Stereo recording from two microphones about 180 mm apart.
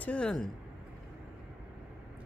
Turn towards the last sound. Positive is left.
turn(degrees=5)  # may be behind; listen again after turning